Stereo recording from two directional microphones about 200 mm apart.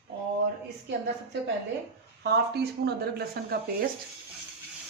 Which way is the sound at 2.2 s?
55° right (ahead or behind).